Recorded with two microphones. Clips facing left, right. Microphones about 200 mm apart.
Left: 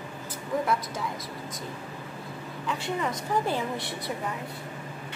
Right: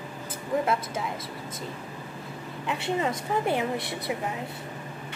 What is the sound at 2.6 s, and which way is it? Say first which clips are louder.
Speech: right 3 dB; 25° right (ahead or behind).